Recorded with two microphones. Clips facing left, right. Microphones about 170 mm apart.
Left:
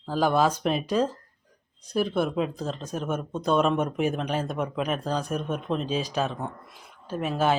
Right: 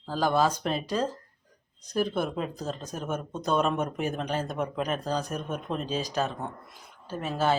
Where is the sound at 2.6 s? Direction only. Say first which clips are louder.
Left 3 dB; 10° right (ahead or behind).